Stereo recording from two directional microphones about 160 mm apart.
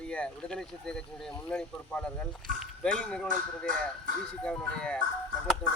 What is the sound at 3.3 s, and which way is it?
Speech, 60° right (ahead or behind).